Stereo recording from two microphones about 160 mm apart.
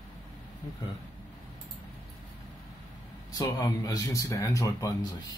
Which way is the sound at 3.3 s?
20° left (ahead or behind).